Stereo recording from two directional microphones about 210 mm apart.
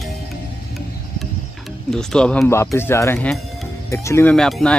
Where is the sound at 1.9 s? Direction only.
5° left (ahead or behind).